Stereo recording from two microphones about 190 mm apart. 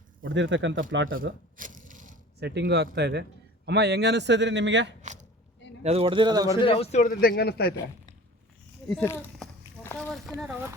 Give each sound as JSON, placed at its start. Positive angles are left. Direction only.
{"t": 0.2, "sound": "speech", "side_deg": -75}
{"t": 1.5, "sound": "a sound", "side_deg": -45}
{"t": 2.4, "sound": "a man's voice", "side_deg": -60}
{"t": 5.8, "sound": "speech", "side_deg": -30}
{"t": 6.6, "sound": "a man's voice", "side_deg": 30}
{"t": 9.0, "sound": "speech", "side_deg": 15}
{"t": 9.8, "sound": "boat", "side_deg": 10}
{"t": 10.4, "sound": "speech", "side_deg": -10}